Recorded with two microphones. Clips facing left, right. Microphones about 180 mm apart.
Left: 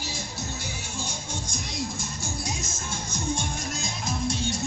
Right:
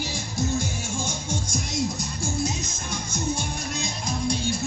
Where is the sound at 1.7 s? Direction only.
35° right (ahead or behind).